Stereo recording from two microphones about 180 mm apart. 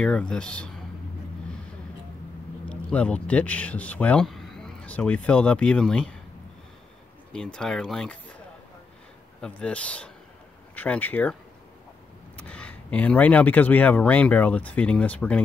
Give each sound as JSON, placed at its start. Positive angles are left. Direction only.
{"t": 0.0, "sound": "speech", "side_deg": 5}
{"t": 2.6, "sound": "speech", "side_deg": 5}
{"t": 7.3, "sound": "speech", "side_deg": 5}
{"t": 9.4, "sound": "speech", "side_deg": 5}
{"t": 12.4, "sound": "speech", "side_deg": 10}